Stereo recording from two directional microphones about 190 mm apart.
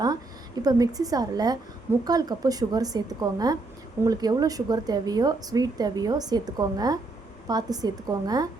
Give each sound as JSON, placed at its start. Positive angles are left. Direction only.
{"t": 0.6, "sound": "speech", "side_deg": -20}